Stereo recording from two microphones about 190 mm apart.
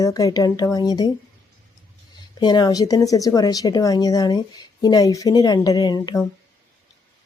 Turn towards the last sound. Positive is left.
turn(degrees=20)  # may be behind; listen again after turning